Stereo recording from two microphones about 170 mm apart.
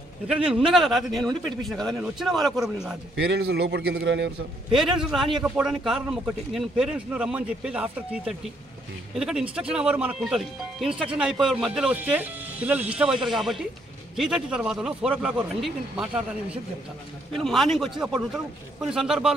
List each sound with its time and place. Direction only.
0.3 s speech: 5° right (ahead or behind)
3.2 s a man's voice: 75° right (ahead or behind); by 4.3 s 90° right
4.7 s speech: 5° right (ahead or behind)
17.4 s speech: centre (ahead or behind)